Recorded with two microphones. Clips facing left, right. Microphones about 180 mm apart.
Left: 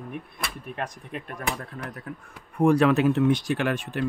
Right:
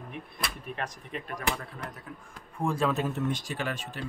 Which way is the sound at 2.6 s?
75° left (ahead or behind).